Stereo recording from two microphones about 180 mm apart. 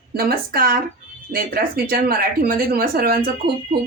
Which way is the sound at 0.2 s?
55° right (ahead or behind).